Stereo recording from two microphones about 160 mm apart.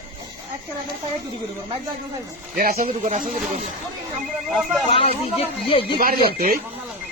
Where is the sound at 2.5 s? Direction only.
60° right (ahead or behind).